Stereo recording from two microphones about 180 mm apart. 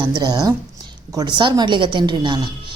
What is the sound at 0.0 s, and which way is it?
A woman's voice, 25° right (ahead or behind).